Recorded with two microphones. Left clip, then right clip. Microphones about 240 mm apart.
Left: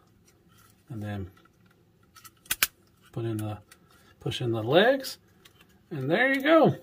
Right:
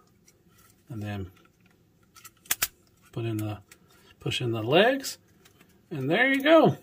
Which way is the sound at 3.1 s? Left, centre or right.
Centre.